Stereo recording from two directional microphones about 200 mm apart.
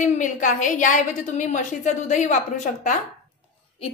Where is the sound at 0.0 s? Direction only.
40° left (ahead or behind).